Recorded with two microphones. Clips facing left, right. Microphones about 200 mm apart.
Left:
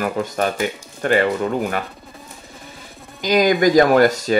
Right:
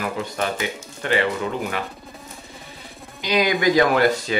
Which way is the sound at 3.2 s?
45° left (ahead or behind).